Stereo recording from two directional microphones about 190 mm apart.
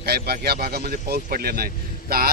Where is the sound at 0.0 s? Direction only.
55° right (ahead or behind).